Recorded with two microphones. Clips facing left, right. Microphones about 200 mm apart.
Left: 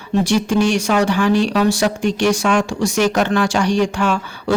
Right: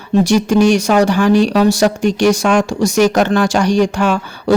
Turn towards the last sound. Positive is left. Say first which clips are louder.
# right 4 dB
turn(degrees=-40)  # may be behind; listen again after turning